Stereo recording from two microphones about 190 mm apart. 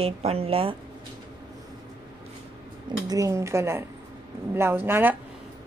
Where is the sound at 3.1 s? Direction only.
15° right (ahead or behind).